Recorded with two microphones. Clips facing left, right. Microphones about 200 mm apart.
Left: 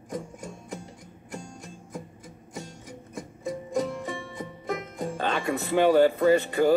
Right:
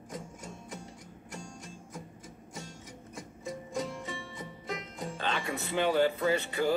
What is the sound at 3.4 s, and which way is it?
Music, 55° left (ahead or behind).